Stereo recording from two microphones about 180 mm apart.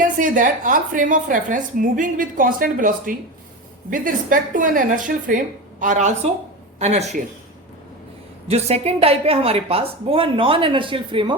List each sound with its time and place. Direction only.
0.0 s a woman's voice: 45° right (ahead or behind)
8.4 s a woman's voice: 35° right (ahead or behind)